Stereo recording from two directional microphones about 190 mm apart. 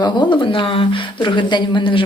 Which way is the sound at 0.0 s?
25° left (ahead or behind).